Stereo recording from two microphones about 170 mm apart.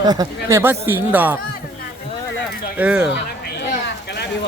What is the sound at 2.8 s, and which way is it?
Speech, 5° right (ahead or behind).